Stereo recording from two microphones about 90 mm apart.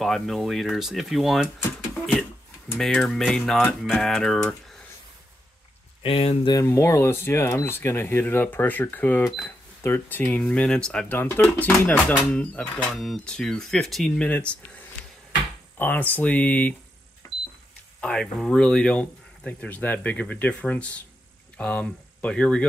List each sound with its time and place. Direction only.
0.0 s speech: centre (ahead or behind)
2.8 s speech: 5° left (ahead or behind)
6.0 s speech: 90° left
6.6 s speech: 30° left (ahead or behind)
10.4 s speech: 5° left (ahead or behind)
11.1 s speech: 20° left (ahead or behind)
12.9 s speech: 5° left (ahead or behind)
14.2 s speech: 15° left (ahead or behind)
15.8 s speech: 20° left (ahead or behind)
17.2 s power windows: 40° left (ahead or behind)
18.0 s speech: 5° left (ahead or behind)